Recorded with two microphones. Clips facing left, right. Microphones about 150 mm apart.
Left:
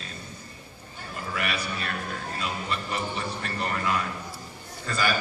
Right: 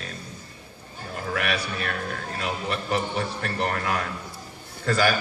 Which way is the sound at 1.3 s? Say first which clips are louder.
Right 3 dB; 65° right (ahead or behind).